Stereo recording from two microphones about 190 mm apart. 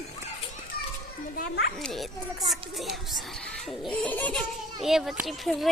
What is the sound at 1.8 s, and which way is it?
A child's voice, centre (ahead or behind).